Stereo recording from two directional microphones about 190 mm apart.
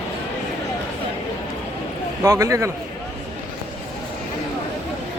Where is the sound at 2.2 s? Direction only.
15° right (ahead or behind).